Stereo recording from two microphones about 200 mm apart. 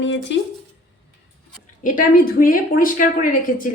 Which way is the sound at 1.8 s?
40° left (ahead or behind).